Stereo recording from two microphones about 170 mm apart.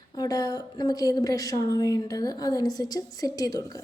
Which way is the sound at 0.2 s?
20° left (ahead or behind).